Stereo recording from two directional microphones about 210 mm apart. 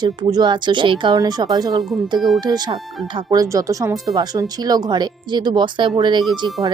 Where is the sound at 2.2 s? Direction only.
Centre (ahead or behind).